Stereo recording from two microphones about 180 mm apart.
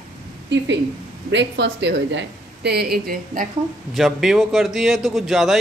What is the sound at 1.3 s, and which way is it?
A woman's voice, 75° right (ahead or behind).